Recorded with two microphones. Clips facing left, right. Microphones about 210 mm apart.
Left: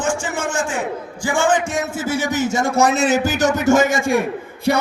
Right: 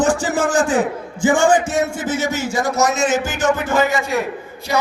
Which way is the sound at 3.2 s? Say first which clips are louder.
Left 3 dB; 40° left (ahead or behind).